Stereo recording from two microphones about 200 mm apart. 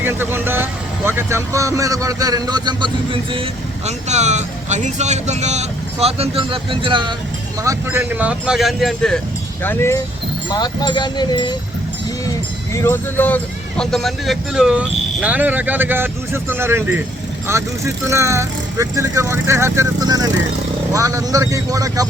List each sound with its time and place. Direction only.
0.0 s speech: 10° right (ahead or behind)
7.6 s speech: 15° right (ahead or behind); by 9.2 s 5° left (ahead or behind)
9.6 s speech: 15° left (ahead or behind)
12.7 s speech: 15° left (ahead or behind); by 22.0 s 15° right (ahead or behind)